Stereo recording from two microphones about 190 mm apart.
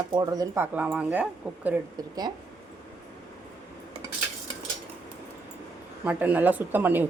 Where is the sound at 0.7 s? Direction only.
5° right (ahead or behind).